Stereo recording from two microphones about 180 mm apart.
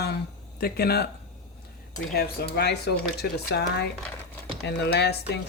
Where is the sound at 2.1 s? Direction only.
60° left (ahead or behind).